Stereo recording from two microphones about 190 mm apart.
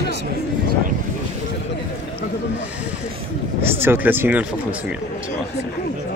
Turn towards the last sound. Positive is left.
turn(degrees=-10)  # may be behind; listen again after turning